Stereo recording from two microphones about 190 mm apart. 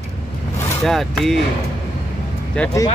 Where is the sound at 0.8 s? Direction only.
Centre (ahead or behind).